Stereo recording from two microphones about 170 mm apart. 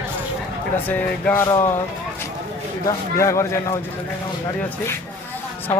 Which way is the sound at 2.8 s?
15° left (ahead or behind).